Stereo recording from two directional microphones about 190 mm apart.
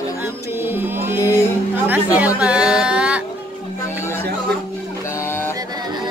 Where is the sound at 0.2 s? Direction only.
10° right (ahead or behind).